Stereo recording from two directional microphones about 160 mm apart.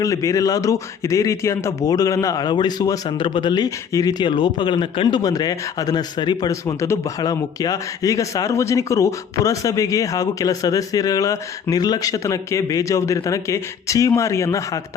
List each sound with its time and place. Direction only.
0.0 s a man's voice: 20° left (ahead or behind)